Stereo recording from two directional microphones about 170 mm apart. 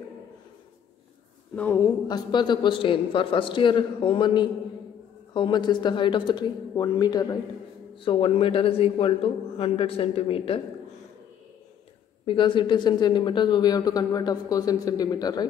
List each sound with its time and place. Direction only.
1.5 s speech: 10° left (ahead or behind)
2.0 s a man's voice: 25° left (ahead or behind)
12.3 s speech: 30° left (ahead or behind)